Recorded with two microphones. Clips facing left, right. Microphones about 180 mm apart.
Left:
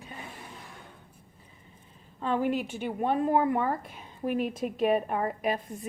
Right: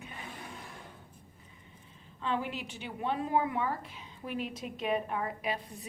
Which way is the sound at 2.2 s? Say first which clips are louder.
Left 7 dB; 45° left (ahead or behind).